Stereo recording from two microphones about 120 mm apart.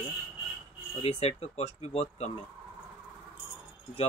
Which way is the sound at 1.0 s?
60° left (ahead or behind).